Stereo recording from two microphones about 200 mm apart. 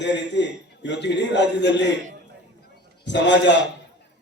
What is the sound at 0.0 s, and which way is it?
A man's voice, 60° left (ahead or behind).